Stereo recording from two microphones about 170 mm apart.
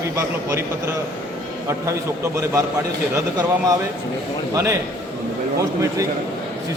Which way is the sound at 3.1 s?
20° right (ahead or behind).